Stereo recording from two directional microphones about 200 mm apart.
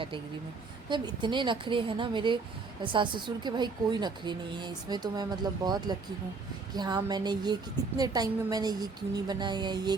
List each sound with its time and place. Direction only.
0.9 s a woman's voice: 25° right (ahead or behind)